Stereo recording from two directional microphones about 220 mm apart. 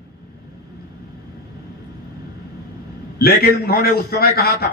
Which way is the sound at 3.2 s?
45° left (ahead or behind).